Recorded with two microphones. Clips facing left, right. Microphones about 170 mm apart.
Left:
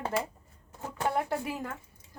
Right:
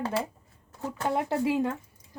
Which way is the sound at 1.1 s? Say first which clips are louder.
Right 6 dB; 25° right (ahead or behind).